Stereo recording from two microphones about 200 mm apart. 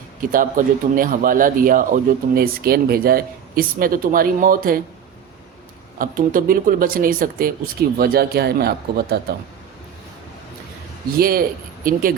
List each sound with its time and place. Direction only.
0.2 s speech: 45° right (ahead or behind)
6.0 s speech: 45° right (ahead or behind)
11.2 s speech: 50° right (ahead or behind)